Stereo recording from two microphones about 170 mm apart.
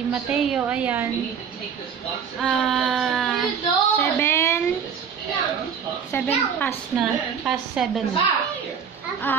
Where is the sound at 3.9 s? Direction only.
15° left (ahead or behind).